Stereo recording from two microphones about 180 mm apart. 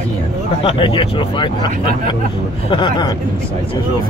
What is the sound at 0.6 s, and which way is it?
Speech, 30° left (ahead or behind).